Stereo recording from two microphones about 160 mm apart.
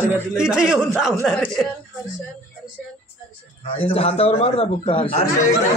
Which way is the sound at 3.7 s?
35° left (ahead or behind).